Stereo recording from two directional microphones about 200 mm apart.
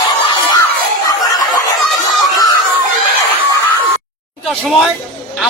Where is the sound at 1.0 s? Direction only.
15° left (ahead or behind).